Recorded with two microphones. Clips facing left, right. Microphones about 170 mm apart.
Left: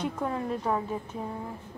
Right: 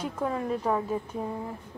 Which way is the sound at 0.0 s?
Centre (ahead or behind).